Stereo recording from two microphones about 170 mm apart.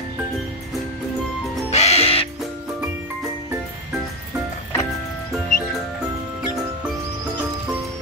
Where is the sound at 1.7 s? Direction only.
40° left (ahead or behind).